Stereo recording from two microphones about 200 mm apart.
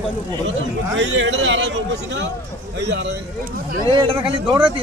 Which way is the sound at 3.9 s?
25° right (ahead or behind).